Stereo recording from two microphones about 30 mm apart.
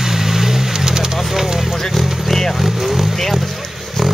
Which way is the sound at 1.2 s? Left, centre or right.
Centre.